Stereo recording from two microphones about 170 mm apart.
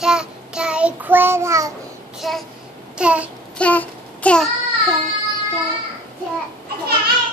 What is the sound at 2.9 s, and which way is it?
Speech, 5° right (ahead or behind).